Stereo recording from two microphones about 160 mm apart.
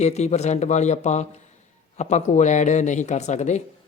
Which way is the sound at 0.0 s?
45° left (ahead or behind).